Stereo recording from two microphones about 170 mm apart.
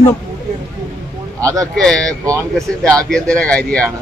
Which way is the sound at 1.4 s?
20° right (ahead or behind).